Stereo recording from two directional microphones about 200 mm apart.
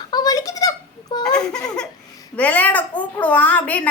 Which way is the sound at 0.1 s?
20° left (ahead or behind).